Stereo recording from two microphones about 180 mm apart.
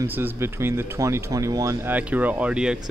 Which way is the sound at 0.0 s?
10° right (ahead or behind).